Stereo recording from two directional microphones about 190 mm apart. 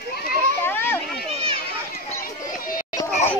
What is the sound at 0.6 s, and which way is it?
Children playing, 10° left (ahead or behind).